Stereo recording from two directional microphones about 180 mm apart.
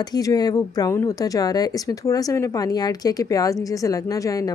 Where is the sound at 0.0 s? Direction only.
20° left (ahead or behind).